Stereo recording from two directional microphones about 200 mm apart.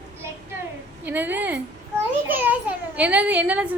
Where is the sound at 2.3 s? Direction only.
10° right (ahead or behind).